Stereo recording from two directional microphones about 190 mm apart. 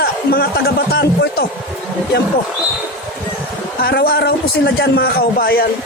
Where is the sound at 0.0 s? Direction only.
55° left (ahead or behind).